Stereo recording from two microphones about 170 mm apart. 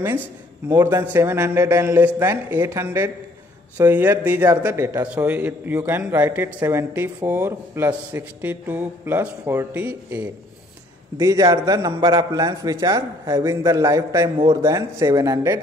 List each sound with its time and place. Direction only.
0.7 s a man's voice: 15° right (ahead or behind)